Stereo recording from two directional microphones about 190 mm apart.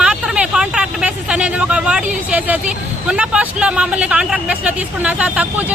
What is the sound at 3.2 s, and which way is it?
Speech, 5° right (ahead or behind).